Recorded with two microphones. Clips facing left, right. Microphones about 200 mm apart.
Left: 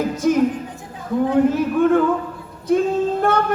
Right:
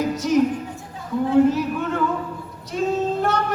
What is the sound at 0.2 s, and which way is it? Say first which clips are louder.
Music: left 3 dB; 50° left (ahead or behind).